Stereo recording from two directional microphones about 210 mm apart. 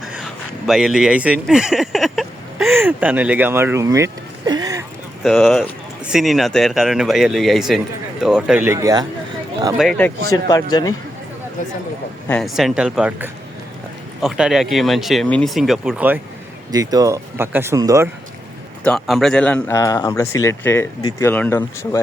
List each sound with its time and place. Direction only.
0.7 s speech: centre (ahead or behind)
5.2 s speech: 5° left (ahead or behind); by 9.0 s 15° right (ahead or behind)
9.7 s speech: centre (ahead or behind)
10.3 s speech: 20° left (ahead or behind)
12.3 s speech: centre (ahead or behind); by 18.1 s 15° right (ahead or behind)
18.8 s speech: 5° left (ahead or behind)